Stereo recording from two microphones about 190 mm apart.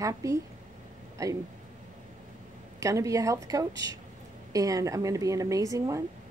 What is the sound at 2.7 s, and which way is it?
A woman's voice, 15° right (ahead or behind).